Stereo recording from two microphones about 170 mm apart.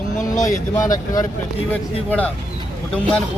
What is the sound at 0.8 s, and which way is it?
Speech, 20° left (ahead or behind).